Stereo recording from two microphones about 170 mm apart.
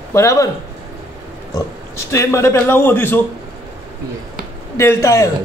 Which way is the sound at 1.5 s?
15° left (ahead or behind).